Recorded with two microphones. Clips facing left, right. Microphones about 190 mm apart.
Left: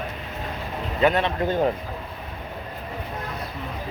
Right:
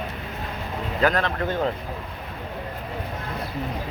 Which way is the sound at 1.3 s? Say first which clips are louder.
Left 3 dB; 15° left (ahead or behind).